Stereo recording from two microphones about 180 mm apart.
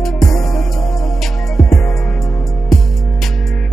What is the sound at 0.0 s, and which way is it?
Music, centre (ahead or behind).